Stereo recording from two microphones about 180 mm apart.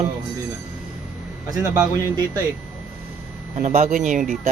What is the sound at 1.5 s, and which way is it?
Speech, 20° right (ahead or behind).